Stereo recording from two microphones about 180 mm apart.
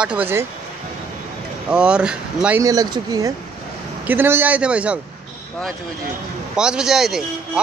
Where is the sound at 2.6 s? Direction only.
20° right (ahead or behind).